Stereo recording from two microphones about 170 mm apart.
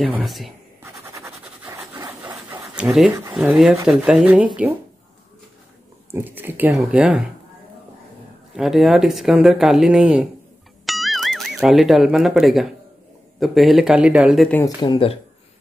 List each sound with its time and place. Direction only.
0.1 s speech: centre (ahead or behind)
0.8 s a sound: 15° right (ahead or behind)
2.6 s speech: 5° right (ahead or behind)
6.1 s speech: 10° right (ahead or behind)
8.5 s speech: centre (ahead or behind)
10.9 s music: centre (ahead or behind)
13.4 s speech: centre (ahead or behind)
14.8 s speech: 30° left (ahead or behind)